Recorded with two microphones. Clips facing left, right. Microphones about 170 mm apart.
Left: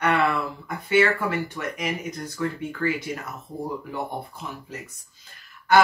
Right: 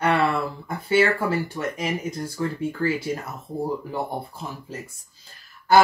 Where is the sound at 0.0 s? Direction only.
30° right (ahead or behind).